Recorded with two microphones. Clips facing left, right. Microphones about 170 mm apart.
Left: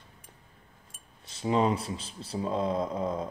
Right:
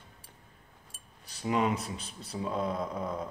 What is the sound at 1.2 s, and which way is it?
Speech, 25° left (ahead or behind).